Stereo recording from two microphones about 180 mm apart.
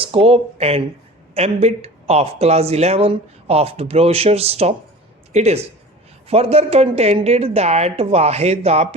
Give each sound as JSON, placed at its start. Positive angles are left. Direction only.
{"t": 0.0, "sound": "speech", "side_deg": -30}